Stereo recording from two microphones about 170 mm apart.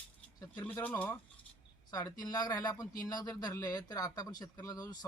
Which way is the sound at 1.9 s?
20° left (ahead or behind).